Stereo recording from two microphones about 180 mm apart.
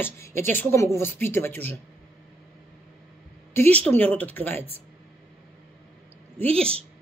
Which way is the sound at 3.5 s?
10° left (ahead or behind).